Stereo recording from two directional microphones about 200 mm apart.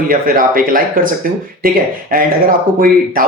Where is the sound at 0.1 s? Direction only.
45° right (ahead or behind).